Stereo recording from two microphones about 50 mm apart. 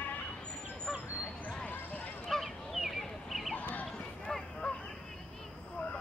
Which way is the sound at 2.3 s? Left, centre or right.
Centre.